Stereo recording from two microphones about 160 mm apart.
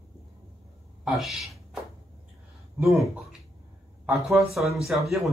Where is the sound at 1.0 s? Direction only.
Centre (ahead or behind).